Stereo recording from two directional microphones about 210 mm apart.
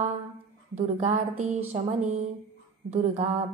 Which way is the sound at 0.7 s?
35° right (ahead or behind).